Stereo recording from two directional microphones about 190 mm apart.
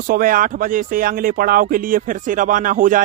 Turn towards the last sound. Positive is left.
turn(degrees=-45)  # may be behind; listen again after turning